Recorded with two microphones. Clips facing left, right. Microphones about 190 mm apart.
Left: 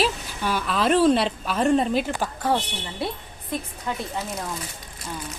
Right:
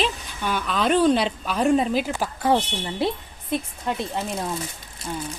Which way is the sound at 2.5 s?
20° right (ahead or behind).